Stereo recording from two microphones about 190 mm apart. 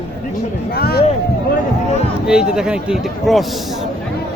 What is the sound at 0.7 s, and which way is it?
Speech, 55° left (ahead or behind).